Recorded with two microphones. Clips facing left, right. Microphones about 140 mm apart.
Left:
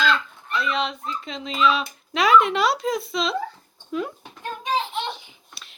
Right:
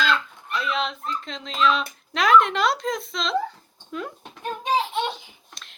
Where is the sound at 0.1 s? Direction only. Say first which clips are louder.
Left 1 dB; centre (ahead or behind).